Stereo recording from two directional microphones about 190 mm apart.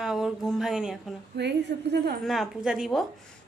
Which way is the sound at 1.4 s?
65° right (ahead or behind).